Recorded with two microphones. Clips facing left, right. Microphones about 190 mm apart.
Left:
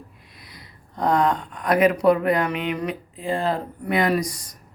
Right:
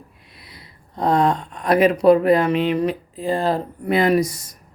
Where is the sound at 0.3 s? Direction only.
25° right (ahead or behind).